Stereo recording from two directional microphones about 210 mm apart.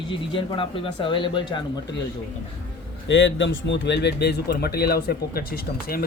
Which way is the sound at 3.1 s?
60° left (ahead or behind).